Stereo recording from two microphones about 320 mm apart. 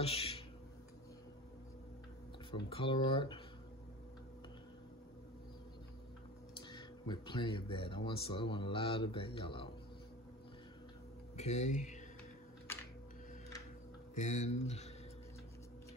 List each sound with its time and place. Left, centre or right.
0.0 s a sound: centre
2.5 s speech: centre
6.7 s speech: centre
11.3 s speech: left
14.2 s speech: left